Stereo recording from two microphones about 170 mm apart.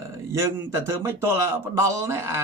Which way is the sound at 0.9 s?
15° right (ahead or behind).